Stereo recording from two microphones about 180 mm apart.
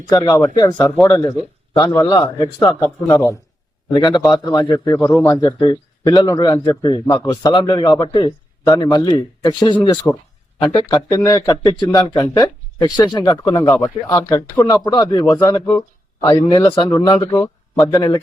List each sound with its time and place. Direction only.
0.1 s a man's voice: 20° left (ahead or behind)
13.6 s a man's voice: 10° left (ahead or behind)